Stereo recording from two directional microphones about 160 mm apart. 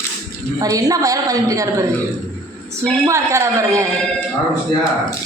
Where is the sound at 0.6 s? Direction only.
20° right (ahead or behind).